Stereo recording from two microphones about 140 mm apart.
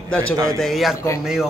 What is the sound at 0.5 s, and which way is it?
Speech, centre (ahead or behind).